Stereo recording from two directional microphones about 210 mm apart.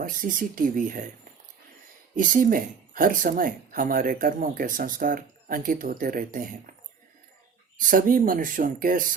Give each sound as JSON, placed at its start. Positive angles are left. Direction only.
{"t": 0.0, "sound": "speech", "side_deg": -40}
{"t": 2.1, "sound": "speech", "side_deg": -40}
{"t": 7.8, "sound": "speech", "side_deg": -40}